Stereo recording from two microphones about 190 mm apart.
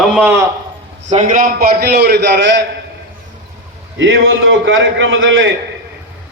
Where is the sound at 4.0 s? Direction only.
90° right.